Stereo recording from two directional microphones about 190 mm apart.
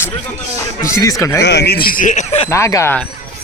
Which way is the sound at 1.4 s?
60° left (ahead or behind).